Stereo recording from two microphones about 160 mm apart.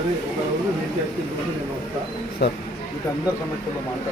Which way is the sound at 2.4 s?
90° left.